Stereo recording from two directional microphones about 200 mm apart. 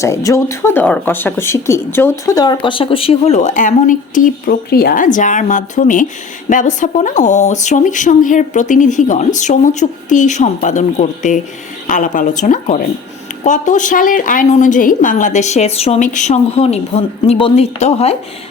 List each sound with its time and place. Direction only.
0.0 s speech: 15° left (ahead or behind); by 18.1 s 35° left (ahead or behind)